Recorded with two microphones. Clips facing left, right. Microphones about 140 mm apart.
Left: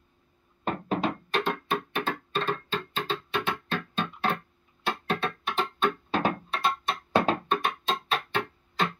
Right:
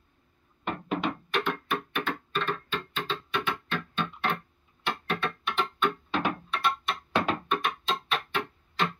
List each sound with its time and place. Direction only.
0.7 s music: 35° left (ahead or behind)